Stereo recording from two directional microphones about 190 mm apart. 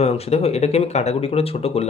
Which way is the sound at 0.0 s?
35° left (ahead or behind).